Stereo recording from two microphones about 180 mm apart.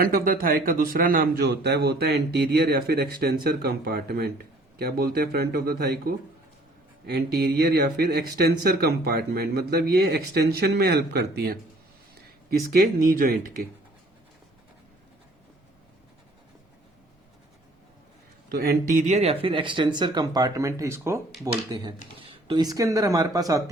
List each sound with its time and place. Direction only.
0.0 s a man's voice: 55° right (ahead or behind)
18.5 s speech: 60° right (ahead or behind); by 21.6 s 20° right (ahead or behind)
22.2 s speech: 30° right (ahead or behind)